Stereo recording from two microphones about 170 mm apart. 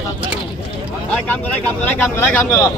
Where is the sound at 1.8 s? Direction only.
10° left (ahead or behind).